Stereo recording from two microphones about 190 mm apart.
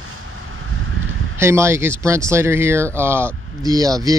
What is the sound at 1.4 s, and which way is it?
Speech, 15° right (ahead or behind).